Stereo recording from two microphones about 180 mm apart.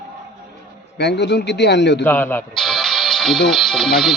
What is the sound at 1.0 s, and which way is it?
A man's voice, 70° left (ahead or behind).